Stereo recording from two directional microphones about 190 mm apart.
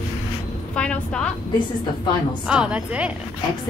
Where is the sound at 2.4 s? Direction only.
5° right (ahead or behind).